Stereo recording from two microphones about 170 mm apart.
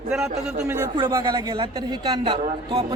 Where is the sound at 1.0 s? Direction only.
20° right (ahead or behind).